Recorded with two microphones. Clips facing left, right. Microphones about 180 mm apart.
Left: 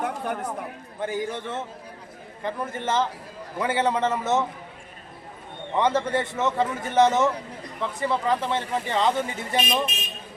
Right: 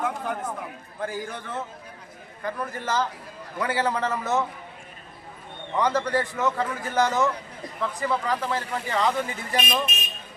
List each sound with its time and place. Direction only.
0.9 s speech: 20° left (ahead or behind)
5.7 s speech: 25° left (ahead or behind)